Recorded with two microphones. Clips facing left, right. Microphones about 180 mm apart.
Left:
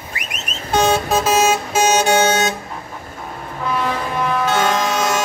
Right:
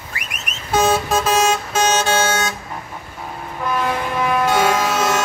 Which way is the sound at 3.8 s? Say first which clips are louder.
Right 1 dB; 10° right (ahead or behind).